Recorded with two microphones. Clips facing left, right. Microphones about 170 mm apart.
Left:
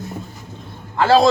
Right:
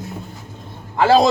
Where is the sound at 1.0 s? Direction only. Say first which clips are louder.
Even; 15° right (ahead or behind).